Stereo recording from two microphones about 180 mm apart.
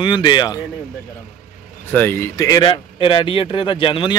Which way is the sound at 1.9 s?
10° left (ahead or behind).